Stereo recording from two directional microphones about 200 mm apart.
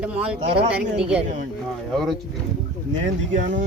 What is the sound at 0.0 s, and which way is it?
Speech, 5° right (ahead or behind).